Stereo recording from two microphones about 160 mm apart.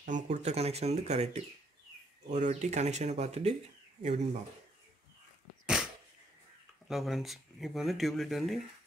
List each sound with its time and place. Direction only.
0.0 s speech: 50° right (ahead or behind)
6.9 s speech: centre (ahead or behind)